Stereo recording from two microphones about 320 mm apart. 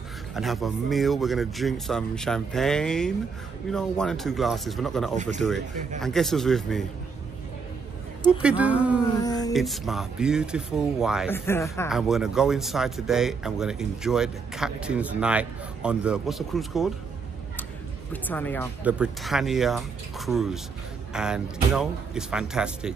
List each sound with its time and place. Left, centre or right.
0.3 s speech: centre
5.1 s speech: right
5.4 s speech: centre
8.3 s speech: centre
9.2 s a sound: centre
9.5 s speech: centre
18.1 s speech: centre